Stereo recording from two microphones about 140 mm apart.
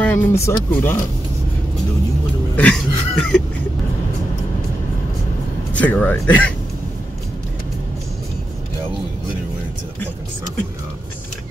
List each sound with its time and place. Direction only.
0.0 s speech: 15° left (ahead or behind)
2.5 s cough: 5° left (ahead or behind)
5.7 s speech: 10° left (ahead or behind)